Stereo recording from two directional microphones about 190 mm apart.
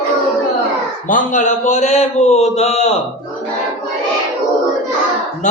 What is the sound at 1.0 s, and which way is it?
Speech, 45° left (ahead or behind).